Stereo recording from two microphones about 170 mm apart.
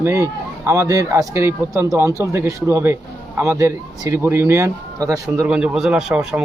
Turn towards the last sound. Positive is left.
turn(degrees=-5)  # may be behind; listen again after turning